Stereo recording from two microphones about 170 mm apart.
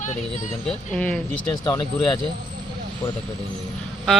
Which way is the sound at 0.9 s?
10° left (ahead or behind).